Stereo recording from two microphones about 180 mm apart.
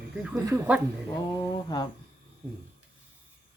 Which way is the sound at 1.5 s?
20° left (ahead or behind).